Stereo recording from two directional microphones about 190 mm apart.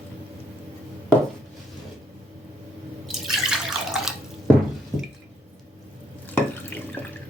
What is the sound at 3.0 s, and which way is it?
Drip, centre (ahead or behind).